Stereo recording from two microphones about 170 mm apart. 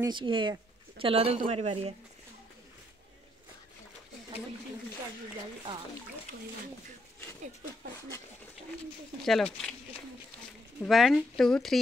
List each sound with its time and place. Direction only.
0.0 s speech: 30° right (ahead or behind)
9.2 s a woman's voice: 5° left (ahead or behind)
10.8 s a woman's voice: centre (ahead or behind)